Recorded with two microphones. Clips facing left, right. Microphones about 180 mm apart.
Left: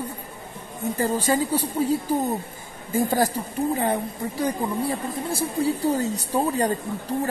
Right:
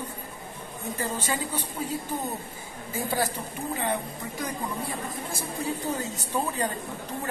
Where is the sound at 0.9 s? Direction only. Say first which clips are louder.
Left 9 dB; 35° left (ahead or behind).